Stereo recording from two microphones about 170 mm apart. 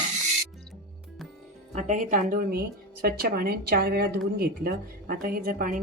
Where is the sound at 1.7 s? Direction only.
50° right (ahead or behind).